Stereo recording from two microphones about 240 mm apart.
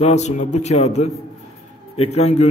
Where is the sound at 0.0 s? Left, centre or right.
Left.